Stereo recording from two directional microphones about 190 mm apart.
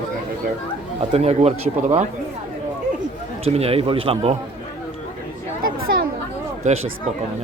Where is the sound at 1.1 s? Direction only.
35° right (ahead or behind).